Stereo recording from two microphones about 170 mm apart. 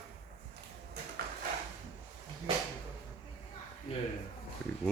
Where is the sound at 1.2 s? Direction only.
65° right (ahead or behind).